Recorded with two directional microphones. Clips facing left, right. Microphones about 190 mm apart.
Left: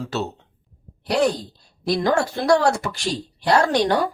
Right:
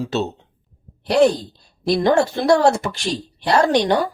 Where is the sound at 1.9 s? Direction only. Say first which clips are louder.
Right 4 dB; 25° right (ahead or behind).